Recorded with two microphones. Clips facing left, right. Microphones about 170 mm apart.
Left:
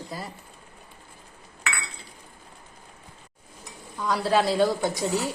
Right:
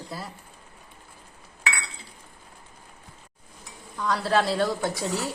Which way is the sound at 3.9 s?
5° left (ahead or behind).